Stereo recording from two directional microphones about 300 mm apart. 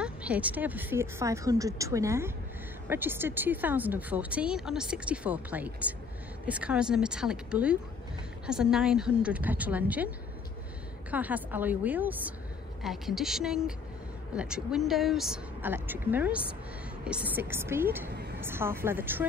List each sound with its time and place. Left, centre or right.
0.0 s a woman's voice: centre
11.1 s a woman's voice: centre
18.1 s a sound: right
18.4 s a woman's voice: centre